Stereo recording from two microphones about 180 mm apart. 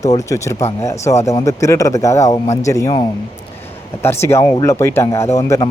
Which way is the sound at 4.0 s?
15° left (ahead or behind).